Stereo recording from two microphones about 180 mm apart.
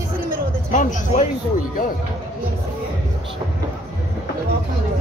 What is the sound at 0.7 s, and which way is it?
Speech, 45° left (ahead or behind).